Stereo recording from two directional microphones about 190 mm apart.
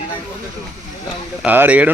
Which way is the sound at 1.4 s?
10° right (ahead or behind).